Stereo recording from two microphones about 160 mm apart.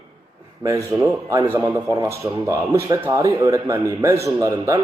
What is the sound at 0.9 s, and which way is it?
A man's voice, 20° right (ahead or behind).